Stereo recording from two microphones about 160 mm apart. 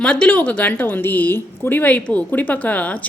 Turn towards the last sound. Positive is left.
turn(degrees=10)  # may be behind; listen again after turning